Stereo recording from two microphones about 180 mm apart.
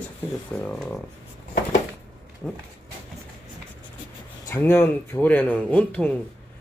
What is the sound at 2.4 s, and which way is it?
Speech, 5° left (ahead or behind).